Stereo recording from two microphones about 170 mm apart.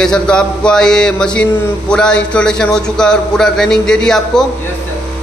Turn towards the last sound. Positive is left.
turn(degrees=5)  # may be behind; listen again after turning